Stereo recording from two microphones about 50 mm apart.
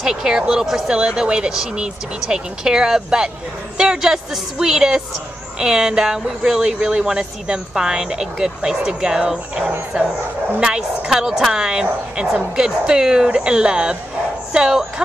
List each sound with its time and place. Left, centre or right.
0.0 s speech: centre